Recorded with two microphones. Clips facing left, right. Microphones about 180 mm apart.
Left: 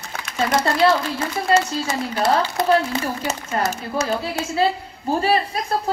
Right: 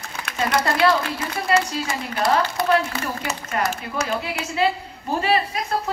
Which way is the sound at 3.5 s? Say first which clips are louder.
Left 1 dB; 30° left (ahead or behind).